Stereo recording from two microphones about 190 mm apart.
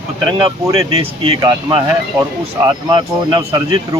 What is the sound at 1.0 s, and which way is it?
Speech, 25° right (ahead or behind).